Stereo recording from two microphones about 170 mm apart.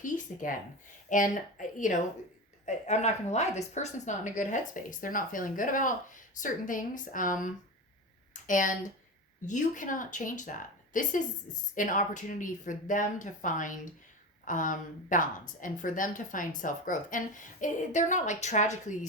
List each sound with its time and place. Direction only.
0.0 s a woman's voice: 50° left (ahead or behind)